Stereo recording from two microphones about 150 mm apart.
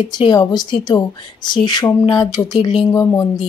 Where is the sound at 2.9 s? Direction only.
20° left (ahead or behind).